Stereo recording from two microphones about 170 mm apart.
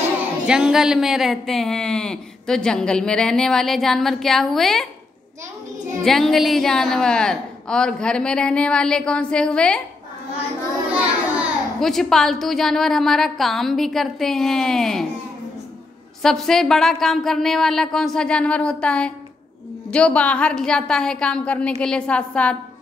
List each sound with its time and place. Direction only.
0.5 s speech: 5° right (ahead or behind)
6.0 s speech: centre (ahead or behind)
10.9 s a child's voice: 5° right (ahead or behind)
16.2 s a woman's voice: centre (ahead or behind)